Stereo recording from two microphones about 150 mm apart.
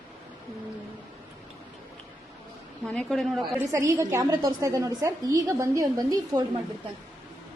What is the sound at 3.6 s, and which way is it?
A woman's voice, 20° right (ahead or behind).